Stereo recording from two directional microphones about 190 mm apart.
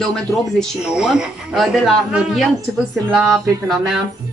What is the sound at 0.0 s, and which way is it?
A man's voice, centre (ahead or behind).